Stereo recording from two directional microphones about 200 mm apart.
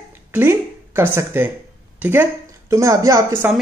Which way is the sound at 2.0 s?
10° right (ahead or behind).